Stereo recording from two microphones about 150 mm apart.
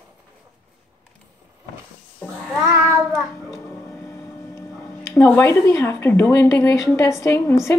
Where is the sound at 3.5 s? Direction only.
15° left (ahead or behind).